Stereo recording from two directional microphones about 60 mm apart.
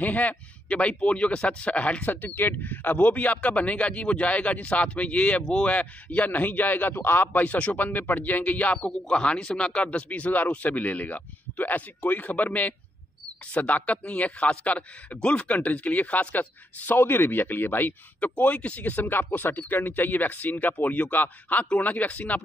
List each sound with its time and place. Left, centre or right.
0.0 s a man's voice: left
2.2 s a man's voice: left
9.1 s a man's voice: centre; by 18.3 s left
18.4 s a man's voice: left